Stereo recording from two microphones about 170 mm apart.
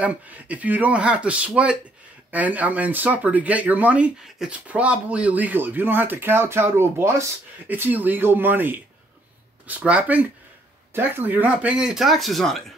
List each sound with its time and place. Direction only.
0.0 s speech: 10° right (ahead or behind)